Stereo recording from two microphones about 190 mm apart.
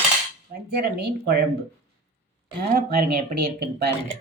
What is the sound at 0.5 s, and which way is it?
Speech, 55° right (ahead or behind).